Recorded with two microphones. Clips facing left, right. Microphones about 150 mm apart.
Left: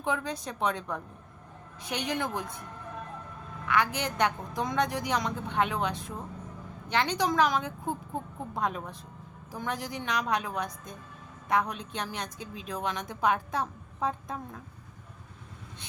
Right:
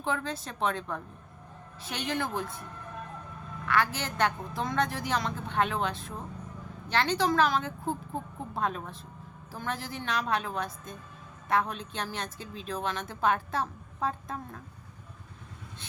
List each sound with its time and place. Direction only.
0.0 s a woman's voice: 15° left (ahead or behind)
3.7 s a woman's voice: 15° left (ahead or behind)